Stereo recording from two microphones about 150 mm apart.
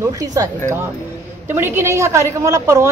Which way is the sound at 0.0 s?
25° right (ahead or behind).